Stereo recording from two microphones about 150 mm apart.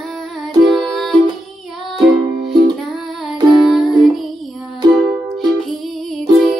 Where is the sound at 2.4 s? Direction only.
90° right.